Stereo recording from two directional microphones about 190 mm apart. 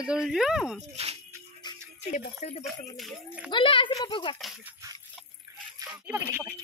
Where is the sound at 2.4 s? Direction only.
35° left (ahead or behind).